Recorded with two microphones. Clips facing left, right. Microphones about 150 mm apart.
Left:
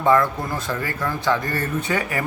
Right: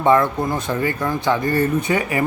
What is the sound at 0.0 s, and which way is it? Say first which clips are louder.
A man's voice: right 2 dB; 20° right (ahead or behind).